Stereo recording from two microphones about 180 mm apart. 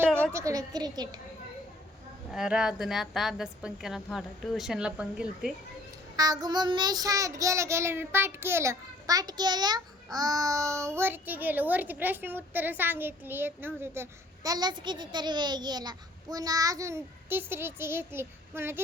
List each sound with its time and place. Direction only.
0.1 s a sound: 5° left (ahead or behind)
0.3 s a woman's voice: 20° right (ahead or behind)
2.3 s a woman's voice: 5° right (ahead or behind)
6.1 s child singing: 20° right (ahead or behind)